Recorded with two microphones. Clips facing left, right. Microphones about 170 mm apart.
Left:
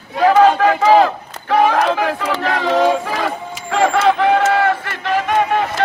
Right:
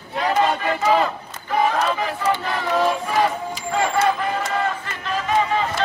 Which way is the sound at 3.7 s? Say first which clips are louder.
Left 6 dB; 90° left.